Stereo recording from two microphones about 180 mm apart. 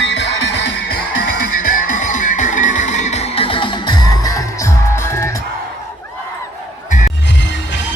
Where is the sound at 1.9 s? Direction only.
45° left (ahead or behind); by 5.3 s 15° left (ahead or behind).